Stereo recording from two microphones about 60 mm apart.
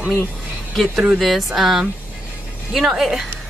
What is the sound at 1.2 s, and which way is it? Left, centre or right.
A woman's voice, centre.